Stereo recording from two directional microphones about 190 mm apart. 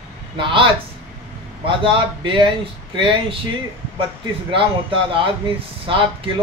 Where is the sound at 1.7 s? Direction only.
25° right (ahead or behind).